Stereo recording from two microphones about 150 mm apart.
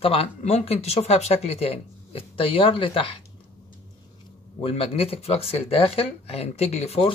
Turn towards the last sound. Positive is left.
turn(degrees=40)  # may be behind; listen again after turning